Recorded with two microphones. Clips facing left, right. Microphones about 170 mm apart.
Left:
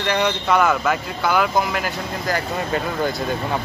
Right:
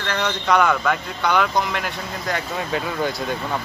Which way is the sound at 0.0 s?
10° left (ahead or behind).